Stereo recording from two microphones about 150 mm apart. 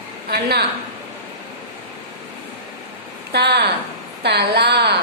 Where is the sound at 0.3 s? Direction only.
90° right.